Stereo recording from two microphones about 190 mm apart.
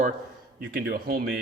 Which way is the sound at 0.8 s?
50° right (ahead or behind).